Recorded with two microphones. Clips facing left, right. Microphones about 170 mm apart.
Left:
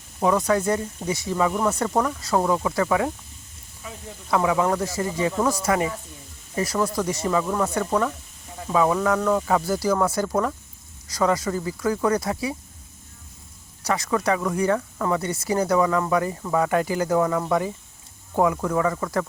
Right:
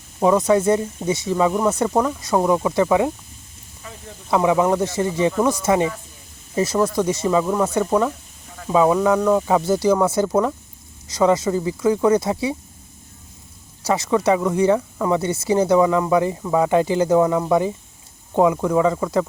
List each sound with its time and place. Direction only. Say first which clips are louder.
0.2 s speech: right 5 dB; 20° right (ahead or behind)
4.3 s speech: right 4 dB; 20° right (ahead or behind)
13.8 s speech: right 5 dB; 25° right (ahead or behind)
15.2 s speech: right 5 dB; 25° right (ahead or behind)